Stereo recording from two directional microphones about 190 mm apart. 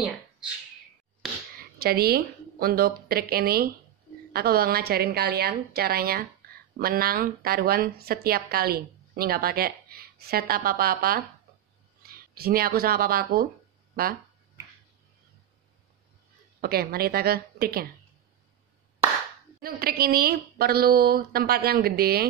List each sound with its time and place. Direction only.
1.6 s a woman's voice: 55° right (ahead or behind)
16.6 s a woman's voice: 55° right (ahead or behind)
19.6 s a woman's voice: 50° right (ahead or behind)